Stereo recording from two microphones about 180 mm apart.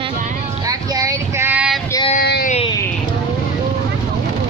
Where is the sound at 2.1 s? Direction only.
55° left (ahead or behind).